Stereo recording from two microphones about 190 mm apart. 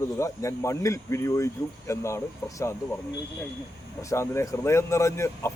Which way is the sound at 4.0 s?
15° left (ahead or behind).